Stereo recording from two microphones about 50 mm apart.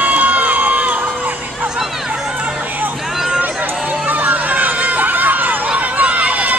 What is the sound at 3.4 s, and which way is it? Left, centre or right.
Run, right.